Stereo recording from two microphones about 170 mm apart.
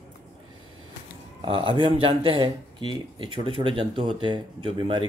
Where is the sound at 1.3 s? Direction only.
30° right (ahead or behind).